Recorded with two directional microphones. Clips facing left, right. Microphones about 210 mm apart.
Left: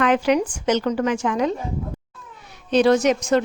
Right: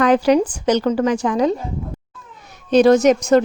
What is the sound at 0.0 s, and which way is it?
A woman's voice, 35° right (ahead or behind).